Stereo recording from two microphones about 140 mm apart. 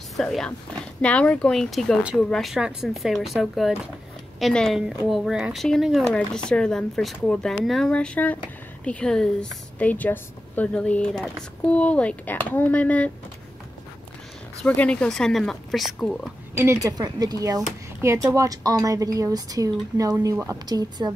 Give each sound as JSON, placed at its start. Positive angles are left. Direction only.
{"t": 0.2, "sound": "a woman's voice", "side_deg": 5}
{"t": 14.6, "sound": "speech", "side_deg": 10}
{"t": 16.5, "sound": "speech", "side_deg": -20}